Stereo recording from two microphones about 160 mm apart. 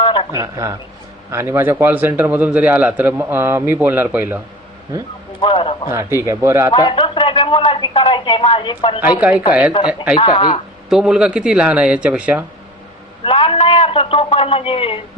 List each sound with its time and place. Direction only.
0.0 s a sound: 30° left (ahead or behind)
0.3 s a man's voice: 20° right (ahead or behind)
5.4 s speech: 35° left (ahead or behind)
5.9 s a man's voice: 15° right (ahead or behind)
6.7 s speech: 30° left (ahead or behind)
9.0 s a man's voice: 10° right (ahead or behind)
10.2 s speech: 35° left (ahead or behind)
10.8 s a man's voice: 5° right (ahead or behind)
13.2 s a man's voice: 35° left (ahead or behind)